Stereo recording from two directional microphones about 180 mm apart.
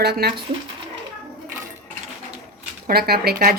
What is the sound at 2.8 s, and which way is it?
Speech, 60° right (ahead or behind).